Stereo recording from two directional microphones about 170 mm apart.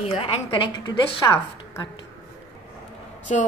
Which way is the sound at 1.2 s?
20° left (ahead or behind).